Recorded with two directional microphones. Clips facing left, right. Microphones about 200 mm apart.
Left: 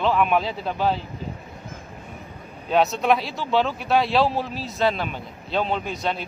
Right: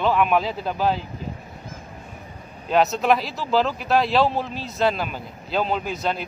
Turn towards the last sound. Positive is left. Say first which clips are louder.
# right 1 dB
turn(degrees=0)  # may be behind; listen again after turning